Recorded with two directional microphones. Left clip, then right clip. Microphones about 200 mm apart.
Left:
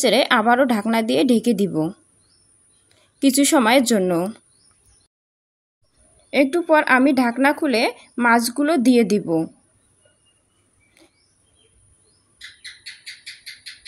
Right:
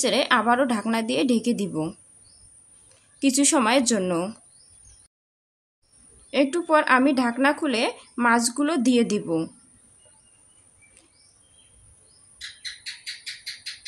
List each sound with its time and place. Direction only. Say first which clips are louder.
0.0 s a woman's voice: left 5 dB; 25° left (ahead or behind)
3.2 s a woman's voice: left 4 dB; 25° left (ahead or behind)
6.3 s a woman's voice: left 4 dB; 20° left (ahead or behind)